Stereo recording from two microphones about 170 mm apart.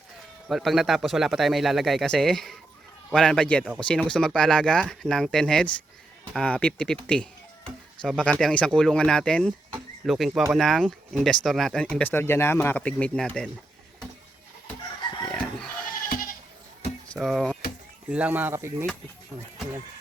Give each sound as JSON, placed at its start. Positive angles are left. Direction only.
{"t": 0.4, "sound": "speech", "side_deg": 0}
{"t": 15.3, "sound": "goat", "side_deg": 0}
{"t": 16.0, "sound": "goat", "side_deg": 55}
{"t": 17.2, "sound": "speech", "side_deg": 0}